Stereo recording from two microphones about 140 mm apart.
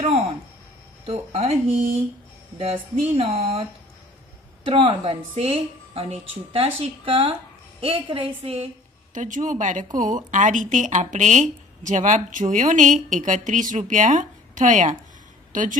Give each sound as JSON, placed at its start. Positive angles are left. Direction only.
{"t": 1.0, "sound": "speech", "side_deg": -45}
{"t": 2.6, "sound": "a woman's voice", "side_deg": -45}
{"t": 4.6, "sound": "a woman's voice", "side_deg": -40}
{"t": 9.1, "sound": "a woman's voice", "side_deg": -65}